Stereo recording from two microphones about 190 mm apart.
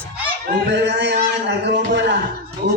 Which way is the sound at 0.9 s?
70° right (ahead or behind).